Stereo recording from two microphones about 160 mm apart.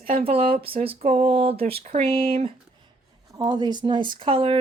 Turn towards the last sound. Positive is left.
turn(degrees=-35)  # may be behind; listen again after turning